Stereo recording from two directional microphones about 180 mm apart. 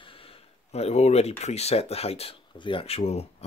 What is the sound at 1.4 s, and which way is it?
Speech, 35° left (ahead or behind).